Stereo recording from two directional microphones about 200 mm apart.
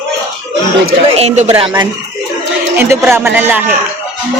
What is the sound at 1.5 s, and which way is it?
Speech, 25° right (ahead or behind).